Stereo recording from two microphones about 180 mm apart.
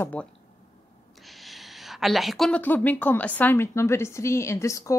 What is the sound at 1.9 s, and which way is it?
A woman's voice, centre (ahead or behind).